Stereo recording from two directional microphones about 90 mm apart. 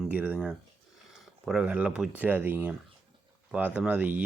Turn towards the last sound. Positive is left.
turn(degrees=-15)  # may be behind; listen again after turning